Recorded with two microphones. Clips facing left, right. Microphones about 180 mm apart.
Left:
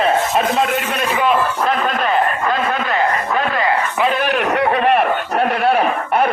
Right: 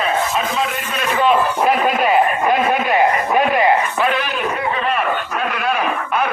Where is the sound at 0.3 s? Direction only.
60° left (ahead or behind).